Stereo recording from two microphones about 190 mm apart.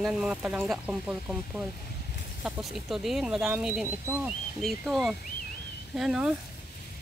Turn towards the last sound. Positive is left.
turn(degrees=-5)  # may be behind; listen again after turning